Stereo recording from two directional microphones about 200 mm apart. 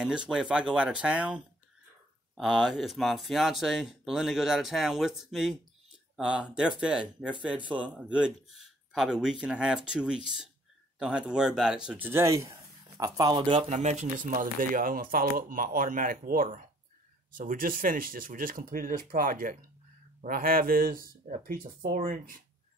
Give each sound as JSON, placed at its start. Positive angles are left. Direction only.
{"t": 0.0, "sound": "speech", "side_deg": -5}